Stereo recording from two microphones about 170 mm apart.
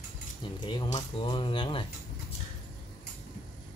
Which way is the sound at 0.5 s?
30° left (ahead or behind).